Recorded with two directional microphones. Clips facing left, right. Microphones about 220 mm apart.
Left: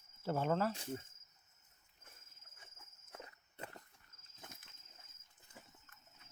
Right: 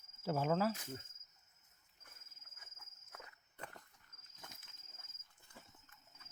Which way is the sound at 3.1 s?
25° left (ahead or behind).